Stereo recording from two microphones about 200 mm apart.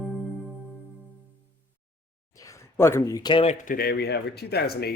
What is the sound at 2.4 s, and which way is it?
Speech, 15° left (ahead or behind).